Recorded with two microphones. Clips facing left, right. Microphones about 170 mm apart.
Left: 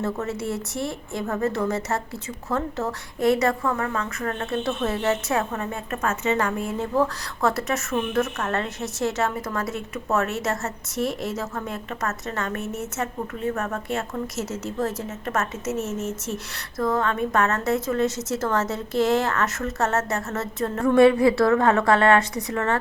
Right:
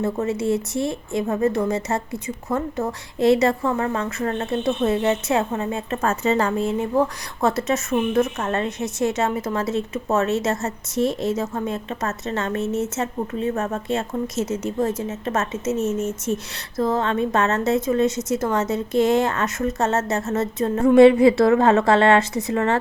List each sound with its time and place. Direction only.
0.0 s a woman's voice: 20° right (ahead or behind)
3.2 s a woman's voice: 25° right (ahead or behind)